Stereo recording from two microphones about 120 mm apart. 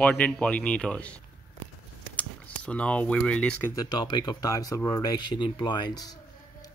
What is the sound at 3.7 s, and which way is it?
Speech, 35° left (ahead or behind).